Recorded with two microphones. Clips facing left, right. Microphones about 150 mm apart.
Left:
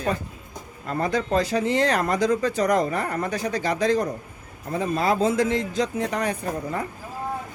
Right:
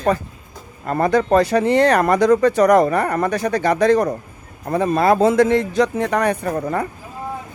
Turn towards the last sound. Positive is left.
turn(degrees=-65)  # may be behind; listen again after turning